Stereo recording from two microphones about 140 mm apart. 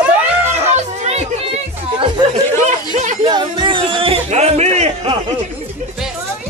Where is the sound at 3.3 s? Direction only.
30° right (ahead or behind); by 5.1 s 50° right (ahead or behind).